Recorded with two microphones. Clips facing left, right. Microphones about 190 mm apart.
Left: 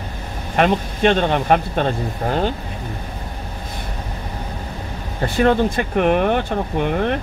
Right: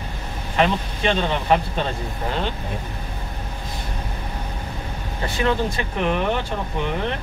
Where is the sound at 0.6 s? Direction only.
55° left (ahead or behind).